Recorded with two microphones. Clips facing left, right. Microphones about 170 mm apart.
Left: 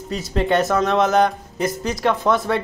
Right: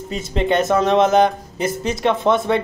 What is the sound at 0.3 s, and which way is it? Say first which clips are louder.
Speech: right 1 dB; 20° right (ahead or behind).